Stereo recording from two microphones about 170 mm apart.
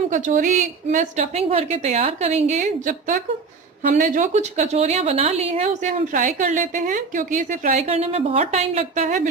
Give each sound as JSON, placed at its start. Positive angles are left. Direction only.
{"t": 0.1, "sound": "a woman's voice", "side_deg": -50}